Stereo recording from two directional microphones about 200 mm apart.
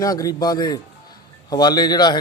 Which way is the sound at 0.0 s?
15° left (ahead or behind).